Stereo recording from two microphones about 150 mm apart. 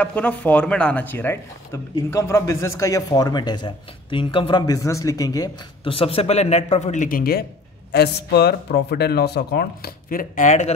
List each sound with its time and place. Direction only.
0.0 s speech: 10° left (ahead or behind); by 5.5 s 25° left (ahead or behind)
5.9 s speech: 40° left (ahead or behind); by 10.7 s 55° left (ahead or behind)